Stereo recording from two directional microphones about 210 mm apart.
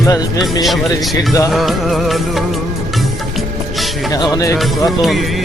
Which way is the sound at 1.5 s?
Centre (ahead or behind).